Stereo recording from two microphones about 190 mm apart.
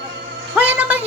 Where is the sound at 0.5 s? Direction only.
10° right (ahead or behind).